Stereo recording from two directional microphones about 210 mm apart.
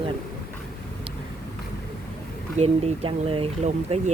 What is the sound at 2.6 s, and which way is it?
Speech, 25° right (ahead or behind).